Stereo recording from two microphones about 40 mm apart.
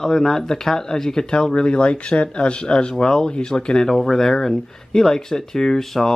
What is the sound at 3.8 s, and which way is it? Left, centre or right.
Speech, centre.